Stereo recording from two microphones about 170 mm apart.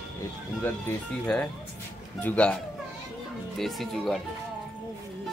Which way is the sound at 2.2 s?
10° left (ahead or behind).